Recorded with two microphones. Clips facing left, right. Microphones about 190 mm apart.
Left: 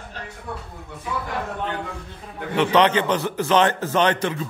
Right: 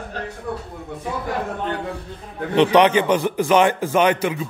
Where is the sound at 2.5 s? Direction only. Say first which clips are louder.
Right 3 dB; 15° right (ahead or behind).